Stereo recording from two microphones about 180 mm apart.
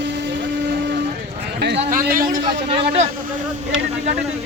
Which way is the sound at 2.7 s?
40° right (ahead or behind).